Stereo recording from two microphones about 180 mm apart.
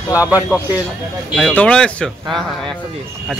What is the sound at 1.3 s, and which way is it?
Speech, 5° left (ahead or behind).